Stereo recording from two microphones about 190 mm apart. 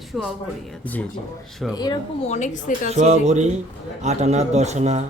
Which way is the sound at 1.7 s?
20° left (ahead or behind).